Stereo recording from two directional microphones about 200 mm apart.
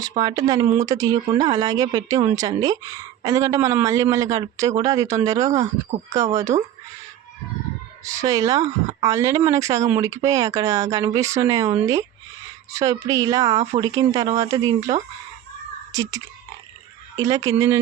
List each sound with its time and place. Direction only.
0.2 s speech: 20° right (ahead or behind)
8.2 s speech: 15° right (ahead or behind)
13.6 s speech: 35° right (ahead or behind)
13.8 s speech: 15° right (ahead or behind)